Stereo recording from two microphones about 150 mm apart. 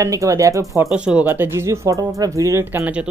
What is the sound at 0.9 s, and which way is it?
Speech, 5° right (ahead or behind).